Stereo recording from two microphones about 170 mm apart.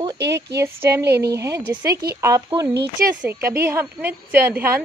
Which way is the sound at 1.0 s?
75° right (ahead or behind).